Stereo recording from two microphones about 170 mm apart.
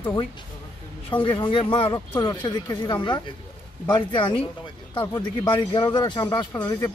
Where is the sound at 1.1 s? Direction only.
30° left (ahead or behind).